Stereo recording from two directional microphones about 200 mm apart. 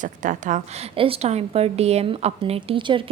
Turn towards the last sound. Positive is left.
turn(degrees=-25)  # may be behind; listen again after turning